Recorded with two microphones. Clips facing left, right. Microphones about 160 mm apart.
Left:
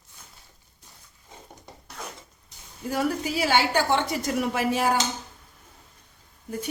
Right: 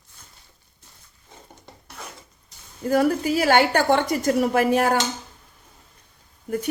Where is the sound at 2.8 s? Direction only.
50° right (ahead or behind).